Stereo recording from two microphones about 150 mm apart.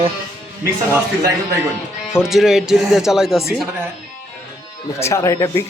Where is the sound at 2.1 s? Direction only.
5° right (ahead or behind).